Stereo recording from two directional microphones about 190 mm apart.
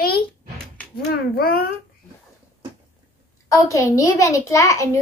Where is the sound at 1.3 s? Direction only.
55° left (ahead or behind).